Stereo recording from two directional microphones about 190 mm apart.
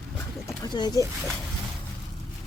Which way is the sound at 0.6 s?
20° left (ahead or behind).